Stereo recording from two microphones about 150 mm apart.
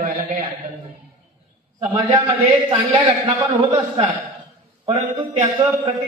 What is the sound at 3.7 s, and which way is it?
Speech, 35° right (ahead or behind).